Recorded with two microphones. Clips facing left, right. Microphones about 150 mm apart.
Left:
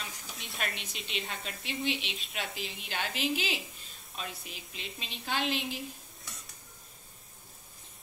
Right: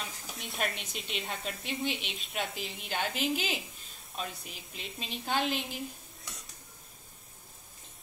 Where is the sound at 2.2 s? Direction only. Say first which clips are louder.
Right 2 dB; centre (ahead or behind).